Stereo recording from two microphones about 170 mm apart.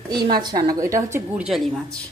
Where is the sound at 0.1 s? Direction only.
25° right (ahead or behind).